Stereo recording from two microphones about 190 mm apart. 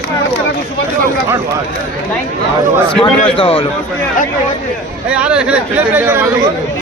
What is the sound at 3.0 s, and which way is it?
Speech, 25° left (ahead or behind).